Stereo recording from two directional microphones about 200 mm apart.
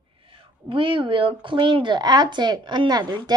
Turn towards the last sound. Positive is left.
turn(degrees=-20)  # may be behind; listen again after turning